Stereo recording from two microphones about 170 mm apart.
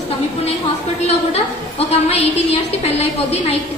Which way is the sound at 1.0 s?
40° left (ahead or behind).